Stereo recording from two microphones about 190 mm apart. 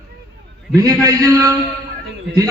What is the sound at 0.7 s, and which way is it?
Speech, 15° right (ahead or behind).